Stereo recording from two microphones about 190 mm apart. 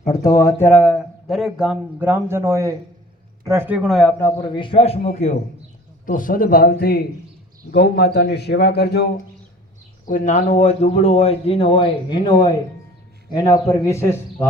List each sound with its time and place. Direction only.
0.1 s a man's voice: 20° left (ahead or behind); by 4.1 s centre (ahead or behind)
4.5 s a man's voice: 25° left (ahead or behind)
6.1 s a man's voice: 45° left (ahead or behind)
10.1 s a man's voice: 40° left (ahead or behind); by 14.2 s 15° left (ahead or behind)